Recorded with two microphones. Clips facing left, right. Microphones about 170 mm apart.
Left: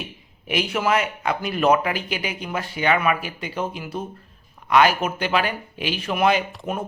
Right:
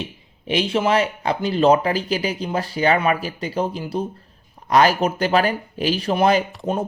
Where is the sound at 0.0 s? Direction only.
30° right (ahead or behind).